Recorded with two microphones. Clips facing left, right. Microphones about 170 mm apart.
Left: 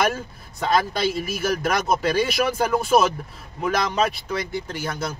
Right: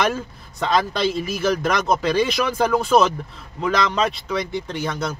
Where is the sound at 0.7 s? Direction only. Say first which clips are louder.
Right 1 dB; 5° left (ahead or behind).